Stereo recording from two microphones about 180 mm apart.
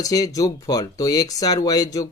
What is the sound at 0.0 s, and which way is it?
Speech, 20° left (ahead or behind).